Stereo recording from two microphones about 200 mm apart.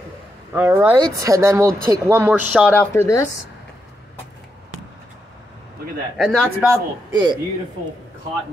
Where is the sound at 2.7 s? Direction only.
10° left (ahead or behind).